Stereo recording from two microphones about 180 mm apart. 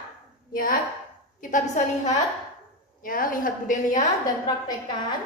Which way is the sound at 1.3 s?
45° left (ahead or behind).